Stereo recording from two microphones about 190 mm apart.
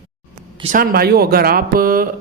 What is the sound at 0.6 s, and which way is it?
Speech, 45° right (ahead or behind).